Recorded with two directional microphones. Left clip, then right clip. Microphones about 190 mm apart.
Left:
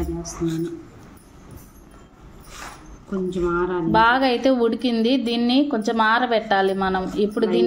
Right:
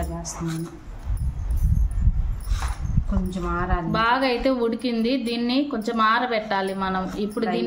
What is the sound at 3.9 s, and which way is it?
A woman's voice, centre (ahead or behind).